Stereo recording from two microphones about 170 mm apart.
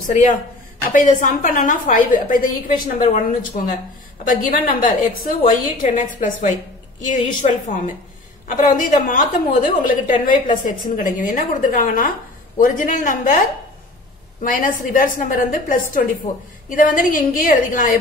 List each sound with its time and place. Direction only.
0.0 s a woman's voice: 50° left (ahead or behind)
4.2 s a woman's voice: 55° left (ahead or behind)
14.4 s a woman's voice: 55° left (ahead or behind)